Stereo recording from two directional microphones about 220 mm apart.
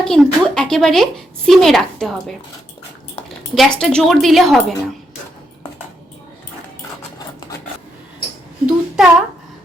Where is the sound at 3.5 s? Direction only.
Centre (ahead or behind).